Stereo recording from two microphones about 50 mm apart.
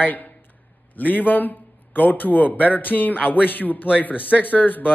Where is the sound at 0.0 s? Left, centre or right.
Left.